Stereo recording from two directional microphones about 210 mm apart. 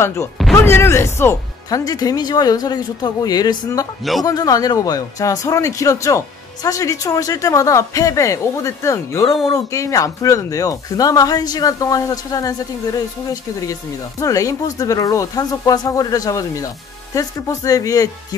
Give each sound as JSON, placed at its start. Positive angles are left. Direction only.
{"t": 0.6, "sound": "speech", "side_deg": 10}